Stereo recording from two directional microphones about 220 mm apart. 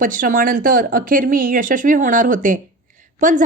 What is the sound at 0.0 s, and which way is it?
A woman's voice, 40° right (ahead or behind).